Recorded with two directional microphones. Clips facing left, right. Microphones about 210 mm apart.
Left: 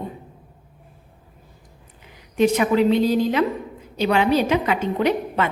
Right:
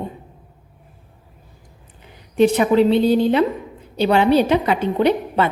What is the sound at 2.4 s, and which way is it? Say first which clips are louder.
A woman's voice: right 3 dB; 30° right (ahead or behind).